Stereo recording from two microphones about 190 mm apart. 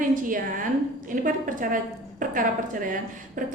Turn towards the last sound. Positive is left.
turn(degrees=-45)  # may be behind; listen again after turning